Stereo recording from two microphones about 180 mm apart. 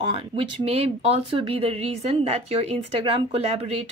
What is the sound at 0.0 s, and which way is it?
A woman's voice, 30° right (ahead or behind).